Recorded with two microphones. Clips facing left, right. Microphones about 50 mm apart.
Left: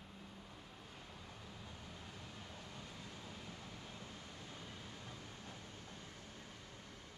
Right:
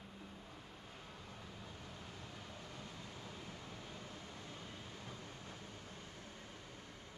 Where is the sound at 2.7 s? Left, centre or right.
Centre.